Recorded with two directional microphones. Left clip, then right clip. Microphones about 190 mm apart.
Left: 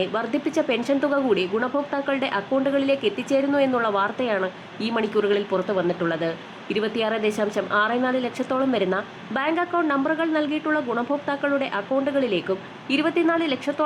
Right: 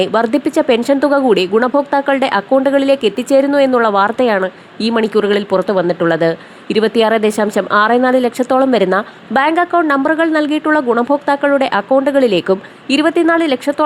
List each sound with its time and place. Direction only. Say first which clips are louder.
0.0 s speech: right 11 dB; 40° right (ahead or behind)